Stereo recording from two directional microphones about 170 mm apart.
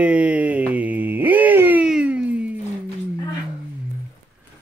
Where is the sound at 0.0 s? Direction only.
10° right (ahead or behind).